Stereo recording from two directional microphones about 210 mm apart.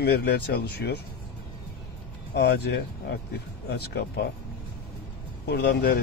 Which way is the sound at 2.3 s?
55° left (ahead or behind).